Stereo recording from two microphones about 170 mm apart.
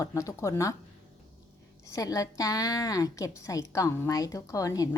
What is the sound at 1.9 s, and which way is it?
A woman's voice, 20° left (ahead or behind).